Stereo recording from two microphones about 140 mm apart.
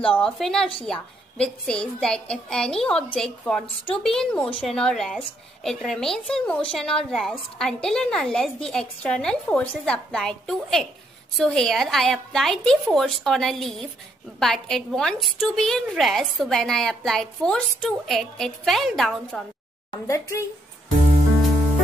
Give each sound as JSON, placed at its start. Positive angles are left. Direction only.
{"t": 0.0, "sound": "a woman's voice", "side_deg": 5}
{"t": 20.1, "sound": "speech", "side_deg": 20}